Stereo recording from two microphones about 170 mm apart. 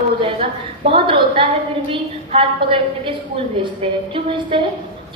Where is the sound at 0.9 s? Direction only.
30° right (ahead or behind).